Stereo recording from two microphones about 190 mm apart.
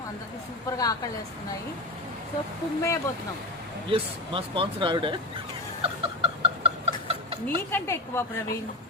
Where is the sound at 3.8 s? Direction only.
25° right (ahead or behind).